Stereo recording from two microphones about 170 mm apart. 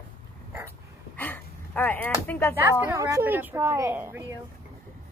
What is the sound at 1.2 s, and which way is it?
Speech, 10° left (ahead or behind).